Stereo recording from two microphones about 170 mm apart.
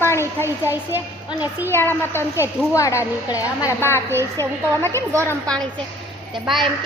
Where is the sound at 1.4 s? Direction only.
10° right (ahead or behind).